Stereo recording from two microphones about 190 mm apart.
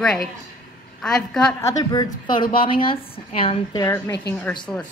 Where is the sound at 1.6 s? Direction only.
20° left (ahead or behind).